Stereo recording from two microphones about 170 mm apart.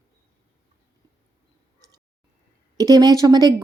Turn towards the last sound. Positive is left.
turn(degrees=-20)  # may be behind; listen again after turning